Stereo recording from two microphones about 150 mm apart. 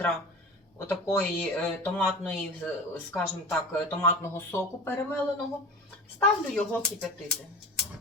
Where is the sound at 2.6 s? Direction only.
10° left (ahead or behind).